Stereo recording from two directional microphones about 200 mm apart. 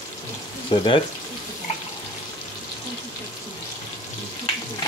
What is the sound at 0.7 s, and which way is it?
Speech, 25° left (ahead or behind).